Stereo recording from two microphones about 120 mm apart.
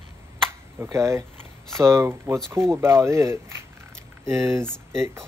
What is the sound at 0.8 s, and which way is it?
Speech, 25° right (ahead or behind).